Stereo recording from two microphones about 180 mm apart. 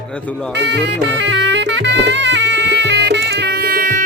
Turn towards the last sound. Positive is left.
turn(degrees=-50)  # may be behind; listen again after turning